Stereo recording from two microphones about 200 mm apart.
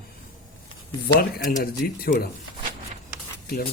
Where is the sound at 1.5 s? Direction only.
50° left (ahead or behind).